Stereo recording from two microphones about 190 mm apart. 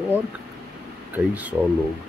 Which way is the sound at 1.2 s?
5° right (ahead or behind).